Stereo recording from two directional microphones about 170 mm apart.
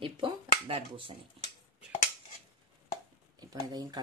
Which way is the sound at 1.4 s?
35° right (ahead or behind).